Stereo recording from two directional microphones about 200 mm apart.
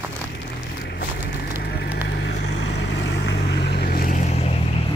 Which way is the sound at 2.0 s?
55° left (ahead or behind).